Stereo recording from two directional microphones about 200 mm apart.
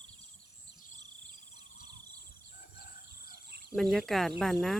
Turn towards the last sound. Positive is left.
turn(degrees=0)  # may be behind; listen again after turning